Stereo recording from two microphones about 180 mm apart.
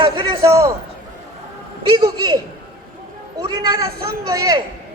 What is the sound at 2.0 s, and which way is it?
Speech, 25° right (ahead or behind).